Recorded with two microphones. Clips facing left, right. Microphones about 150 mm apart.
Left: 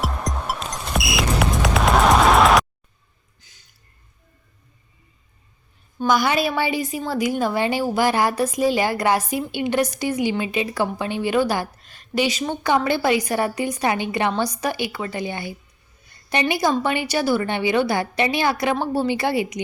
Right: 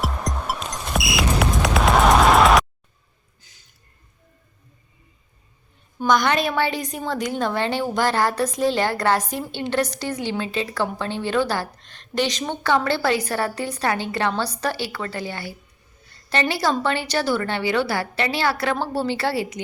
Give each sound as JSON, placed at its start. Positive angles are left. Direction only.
{"t": 0.0, "sound": "music", "side_deg": 0}
{"t": 6.1, "sound": "a woman's voice", "side_deg": 5}
{"t": 16.0, "sound": "a sound", "side_deg": 15}
{"t": 16.8, "sound": "a woman's voice", "side_deg": 15}